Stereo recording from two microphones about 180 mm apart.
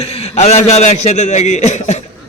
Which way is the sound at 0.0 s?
35° left (ahead or behind).